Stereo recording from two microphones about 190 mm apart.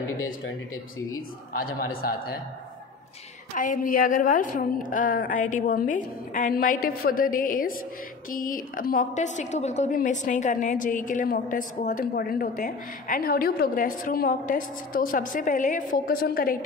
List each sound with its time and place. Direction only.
1.6 s a woman's voice: 50° left (ahead or behind)
3.5 s a woman's voice: 45° left (ahead or behind)